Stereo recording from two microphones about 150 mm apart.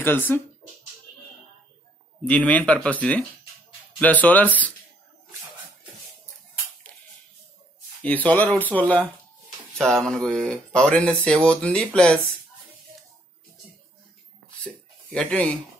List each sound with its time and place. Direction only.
0.0 s speech: 15° left (ahead or behind)
2.2 s speech: 10° left (ahead or behind)
8.0 s speech: 10° left (ahead or behind)
14.6 s a sound: 10° left (ahead or behind)